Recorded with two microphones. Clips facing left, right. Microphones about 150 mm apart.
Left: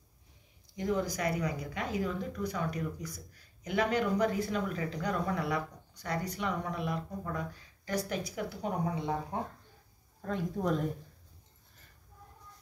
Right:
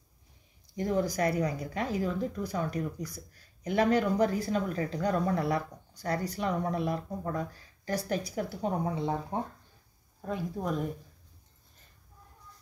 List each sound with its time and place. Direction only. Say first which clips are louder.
0.7 s speech: right 3 dB; 35° right (ahead or behind)
10.2 s speech: left 1 dB; 5° right (ahead or behind)